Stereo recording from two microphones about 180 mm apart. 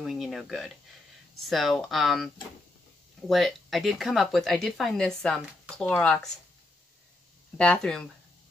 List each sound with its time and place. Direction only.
0.0 s speech: centre (ahead or behind)
7.5 s speech: 5° left (ahead or behind)